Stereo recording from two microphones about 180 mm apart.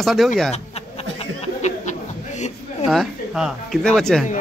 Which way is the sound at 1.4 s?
40° left (ahead or behind).